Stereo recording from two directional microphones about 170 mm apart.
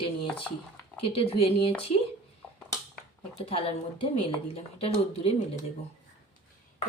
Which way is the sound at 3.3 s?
35° left (ahead or behind).